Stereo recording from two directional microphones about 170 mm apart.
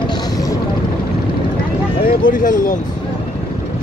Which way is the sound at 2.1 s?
55° left (ahead or behind).